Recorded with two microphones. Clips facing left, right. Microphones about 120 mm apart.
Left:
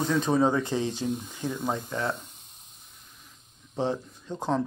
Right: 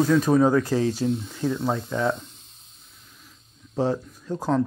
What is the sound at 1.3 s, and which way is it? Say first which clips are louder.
Speech: right 6 dB; 15° left (ahead or behind).